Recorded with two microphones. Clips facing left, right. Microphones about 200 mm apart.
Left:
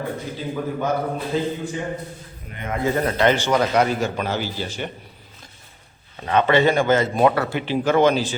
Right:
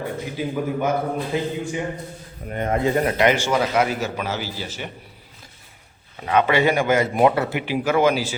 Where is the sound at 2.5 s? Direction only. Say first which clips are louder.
Right 7 dB; 45° right (ahead or behind).